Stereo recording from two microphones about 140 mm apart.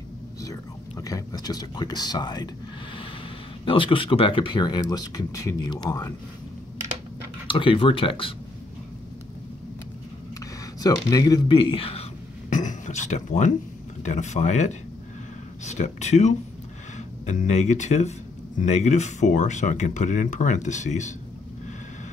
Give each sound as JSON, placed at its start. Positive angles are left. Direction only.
{"t": 0.4, "sound": "speech", "side_deg": 25}
{"t": 3.6, "sound": "speech", "side_deg": 35}
{"t": 7.4, "sound": "speech", "side_deg": 40}
{"t": 10.8, "sound": "speech", "side_deg": 25}
{"t": 12.4, "sound": "a sound", "side_deg": 65}
{"t": 14.0, "sound": "speech", "side_deg": 55}